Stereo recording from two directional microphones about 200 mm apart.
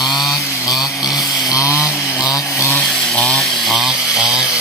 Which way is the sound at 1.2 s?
20° left (ahead or behind).